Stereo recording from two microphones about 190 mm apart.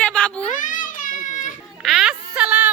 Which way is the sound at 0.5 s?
45° left (ahead or behind).